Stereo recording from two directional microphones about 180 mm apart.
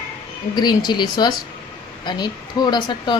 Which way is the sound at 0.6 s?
25° left (ahead or behind).